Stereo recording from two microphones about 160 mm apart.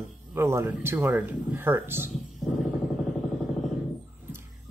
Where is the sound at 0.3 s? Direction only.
15° right (ahead or behind).